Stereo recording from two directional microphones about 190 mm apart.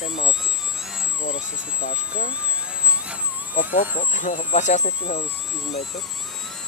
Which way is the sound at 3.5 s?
45° left (ahead or behind).